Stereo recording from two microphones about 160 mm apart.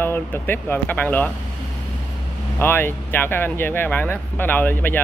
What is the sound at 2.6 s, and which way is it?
Speech, 15° left (ahead or behind).